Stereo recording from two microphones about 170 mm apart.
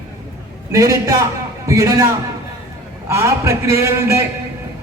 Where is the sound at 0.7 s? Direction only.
20° right (ahead or behind).